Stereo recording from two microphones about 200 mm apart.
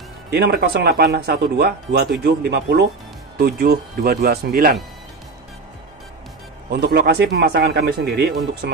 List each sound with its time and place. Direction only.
0.3 s speech: 55° right (ahead or behind)
6.7 s speech: 55° right (ahead or behind)